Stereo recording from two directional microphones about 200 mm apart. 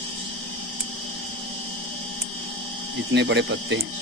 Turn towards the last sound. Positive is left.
turn(degrees=-60)  # may be behind; listen again after turning